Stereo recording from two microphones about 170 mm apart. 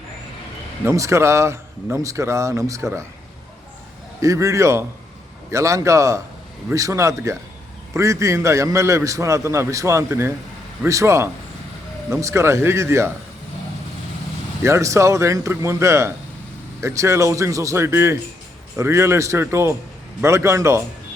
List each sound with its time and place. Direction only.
0.9 s a man's voice: 15° right (ahead or behind)
4.2 s a man's voice: 20° right (ahead or behind)
14.6 s a man's voice: 15° right (ahead or behind)